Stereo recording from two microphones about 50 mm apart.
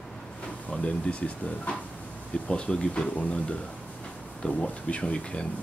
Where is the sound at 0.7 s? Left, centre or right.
Left.